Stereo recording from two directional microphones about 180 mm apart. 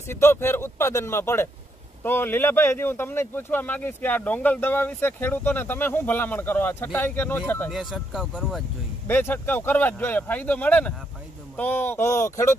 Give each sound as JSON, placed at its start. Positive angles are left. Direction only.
{"t": 0.1, "sound": "speech", "side_deg": 15}
{"t": 7.7, "sound": "speech", "side_deg": -5}
{"t": 9.0, "sound": "speech", "side_deg": 10}